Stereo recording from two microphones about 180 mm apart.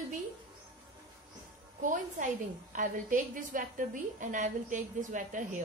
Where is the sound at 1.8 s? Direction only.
45° right (ahead or behind).